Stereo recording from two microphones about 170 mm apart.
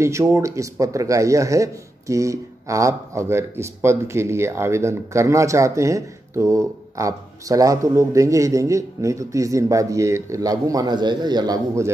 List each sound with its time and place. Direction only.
0.0 s speech: 15° right (ahead or behind)